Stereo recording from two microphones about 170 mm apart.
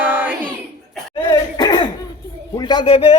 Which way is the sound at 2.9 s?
35° left (ahead or behind).